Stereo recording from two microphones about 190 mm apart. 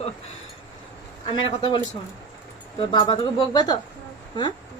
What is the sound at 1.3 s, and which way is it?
Speech, 25° left (ahead or behind).